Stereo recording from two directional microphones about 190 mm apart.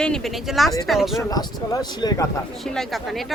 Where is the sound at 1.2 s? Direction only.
20° left (ahead or behind).